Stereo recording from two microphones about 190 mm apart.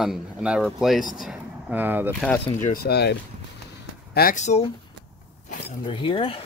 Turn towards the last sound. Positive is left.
turn(degrees=30)  # may be behind; listen again after turning